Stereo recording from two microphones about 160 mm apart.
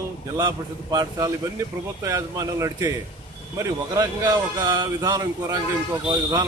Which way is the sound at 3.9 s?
25° right (ahead or behind).